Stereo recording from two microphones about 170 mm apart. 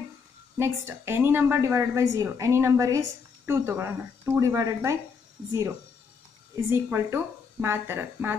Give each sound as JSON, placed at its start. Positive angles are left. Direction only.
{"t": 0.6, "sound": "a woman's voice", "side_deg": -15}
{"t": 6.5, "sound": "a woman's voice", "side_deg": -15}